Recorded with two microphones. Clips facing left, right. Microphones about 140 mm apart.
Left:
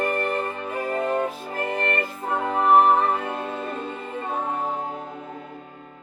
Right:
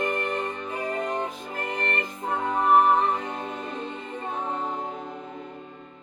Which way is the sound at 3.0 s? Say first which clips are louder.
Left 2 dB; 55° left (ahead or behind).